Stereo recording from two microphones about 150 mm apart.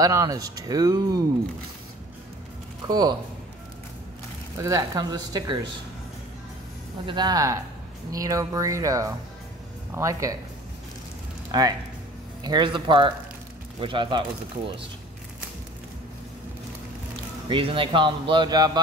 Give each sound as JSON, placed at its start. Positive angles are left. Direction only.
{"t": 0.0, "sound": "speech", "side_deg": -25}
{"t": 2.9, "sound": "speech", "side_deg": -30}
{"t": 4.6, "sound": "speech", "side_deg": -25}
{"t": 7.1, "sound": "speech", "side_deg": -30}
{"t": 11.5, "sound": "speech", "side_deg": -25}
{"t": 17.5, "sound": "speech", "side_deg": -35}